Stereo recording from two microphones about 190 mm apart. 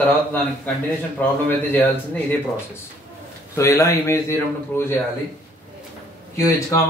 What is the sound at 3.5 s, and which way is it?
A man's voice, 15° left (ahead or behind).